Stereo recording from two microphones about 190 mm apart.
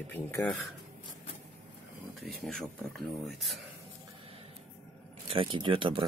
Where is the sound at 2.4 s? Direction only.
5° left (ahead or behind).